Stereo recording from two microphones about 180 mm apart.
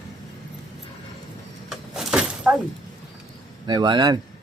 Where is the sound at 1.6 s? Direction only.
Centre (ahead or behind).